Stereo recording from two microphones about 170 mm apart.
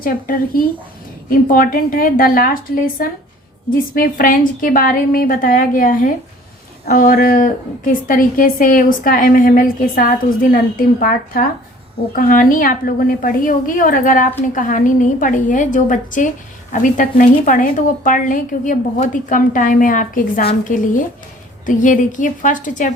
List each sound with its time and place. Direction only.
0.0 s a woman's voice: 55° left (ahead or behind)